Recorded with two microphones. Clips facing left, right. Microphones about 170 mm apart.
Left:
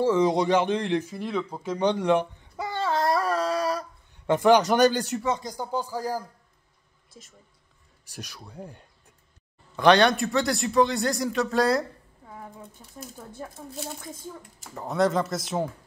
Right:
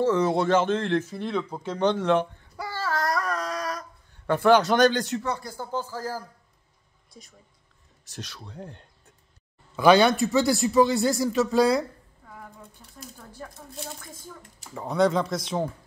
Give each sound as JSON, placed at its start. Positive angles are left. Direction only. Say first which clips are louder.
{"t": 0.0, "sound": "speech", "louder": "left 1 dB", "side_deg": 15}
{"t": 1.6, "sound": "a sound", "louder": "even", "side_deg": 10}
{"t": 4.3, "sound": "speech", "louder": "even", "side_deg": 15}
{"t": 7.1, "sound": "speech", "louder": "even", "side_deg": 0}
{"t": 9.8, "sound": "a man's voice", "louder": "right 1 dB", "side_deg": -5}
{"t": 12.8, "sound": "speech", "louder": "left 2 dB", "side_deg": 15}
{"t": 14.6, "sound": "a man's voice", "louder": "right 1 dB", "side_deg": 0}